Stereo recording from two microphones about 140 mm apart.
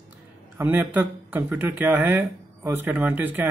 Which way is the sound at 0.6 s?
15° right (ahead or behind).